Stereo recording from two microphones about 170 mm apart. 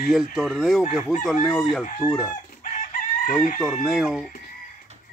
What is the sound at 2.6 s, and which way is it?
Chicken, 50° left (ahead or behind).